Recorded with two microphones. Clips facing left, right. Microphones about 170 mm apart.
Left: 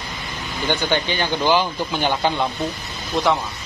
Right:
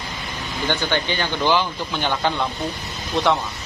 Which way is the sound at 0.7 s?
15° left (ahead or behind).